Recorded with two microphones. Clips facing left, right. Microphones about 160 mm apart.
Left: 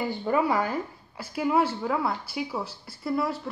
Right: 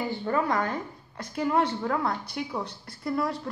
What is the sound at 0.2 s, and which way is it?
A woman's voice, 10° left (ahead or behind).